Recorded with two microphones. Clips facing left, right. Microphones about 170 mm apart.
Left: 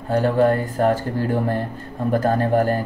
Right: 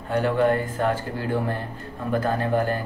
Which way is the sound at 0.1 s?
40° left (ahead or behind).